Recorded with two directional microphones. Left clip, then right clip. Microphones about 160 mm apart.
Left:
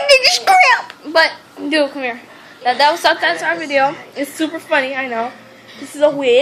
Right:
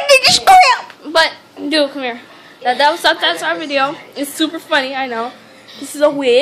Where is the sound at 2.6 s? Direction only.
55° right (ahead or behind).